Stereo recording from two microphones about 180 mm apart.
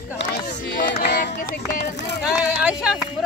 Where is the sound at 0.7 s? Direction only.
55° left (ahead or behind).